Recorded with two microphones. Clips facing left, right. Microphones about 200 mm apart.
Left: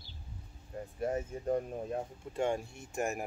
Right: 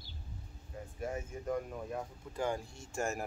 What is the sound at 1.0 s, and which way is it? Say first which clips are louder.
Speech: left 5 dB; 35° left (ahead or behind).